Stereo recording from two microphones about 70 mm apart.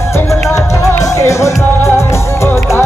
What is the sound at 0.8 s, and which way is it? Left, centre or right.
Music, left.